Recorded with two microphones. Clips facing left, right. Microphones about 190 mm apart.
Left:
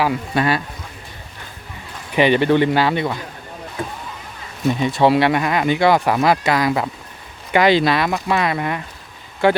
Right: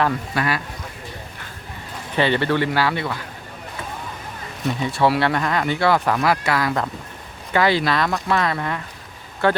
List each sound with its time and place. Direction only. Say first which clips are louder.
0.3 s speech: left 7 dB; 25° left (ahead or behind)
2.1 s speech: left 5 dB; 15° left (ahead or behind)
4.8 s speech: left 4 dB; 20° left (ahead or behind)